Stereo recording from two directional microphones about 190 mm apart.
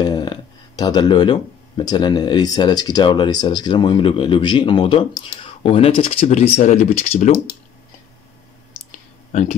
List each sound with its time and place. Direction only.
0.0 s speech: 20° left (ahead or behind); by 7.5 s 40° left (ahead or behind)
9.3 s speech: 40° left (ahead or behind)